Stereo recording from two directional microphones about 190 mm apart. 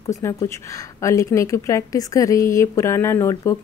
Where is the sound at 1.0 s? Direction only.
15° left (ahead or behind).